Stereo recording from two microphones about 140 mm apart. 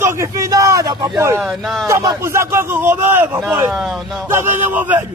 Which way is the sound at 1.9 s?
20° right (ahead or behind).